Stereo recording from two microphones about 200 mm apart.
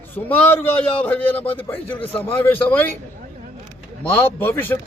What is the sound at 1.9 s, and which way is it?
Speech, 25° left (ahead or behind).